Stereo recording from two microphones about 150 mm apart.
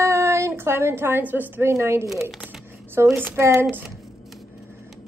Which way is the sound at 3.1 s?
15° right (ahead or behind).